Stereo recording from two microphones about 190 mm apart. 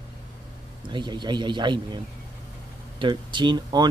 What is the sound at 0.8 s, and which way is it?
Speech, 25° right (ahead or behind).